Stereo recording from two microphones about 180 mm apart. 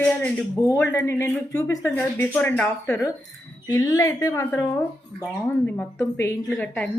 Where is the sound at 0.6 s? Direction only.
15° left (ahead or behind).